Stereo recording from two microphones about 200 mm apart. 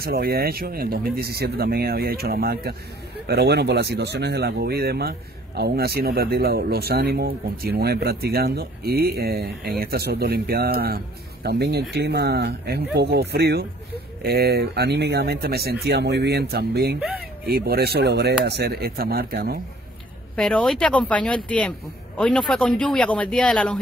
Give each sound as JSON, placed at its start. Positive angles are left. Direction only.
{"t": 0.0, "sound": "speech", "side_deg": -50}
{"t": 20.3, "sound": "speech", "side_deg": 5}